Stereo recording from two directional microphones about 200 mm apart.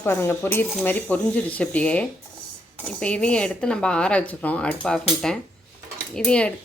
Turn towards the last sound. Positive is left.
turn(degrees=5)  # may be behind; listen again after turning